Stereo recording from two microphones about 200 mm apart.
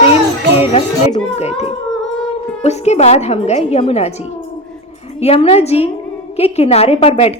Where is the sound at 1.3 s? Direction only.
30° left (ahead or behind).